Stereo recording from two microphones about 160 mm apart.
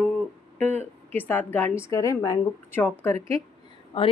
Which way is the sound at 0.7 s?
10° left (ahead or behind).